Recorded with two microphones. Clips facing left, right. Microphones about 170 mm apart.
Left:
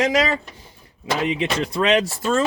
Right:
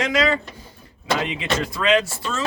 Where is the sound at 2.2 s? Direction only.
50° left (ahead or behind).